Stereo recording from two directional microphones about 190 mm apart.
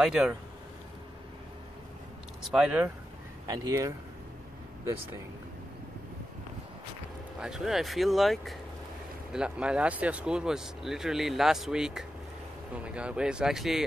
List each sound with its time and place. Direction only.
0.0 s speech: 5° right (ahead or behind)
2.5 s speech: 5° right (ahead or behind)
3.4 s speech: 20° right (ahead or behind)
7.3 s speech: 5° right (ahead or behind)